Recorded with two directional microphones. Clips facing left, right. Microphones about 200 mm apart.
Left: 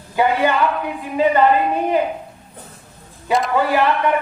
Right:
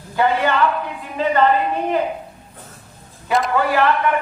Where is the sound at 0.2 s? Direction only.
15° left (ahead or behind).